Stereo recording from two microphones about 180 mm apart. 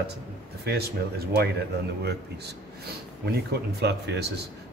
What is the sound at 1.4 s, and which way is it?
A man's voice, 65° right (ahead or behind).